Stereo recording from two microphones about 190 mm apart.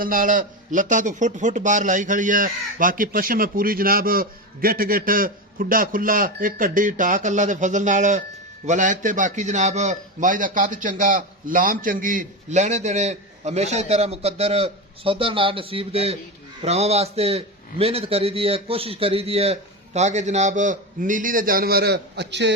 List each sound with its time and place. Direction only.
0.0 s a man's voice: 45° right (ahead or behind); by 22.5 s 65° right (ahead or behind)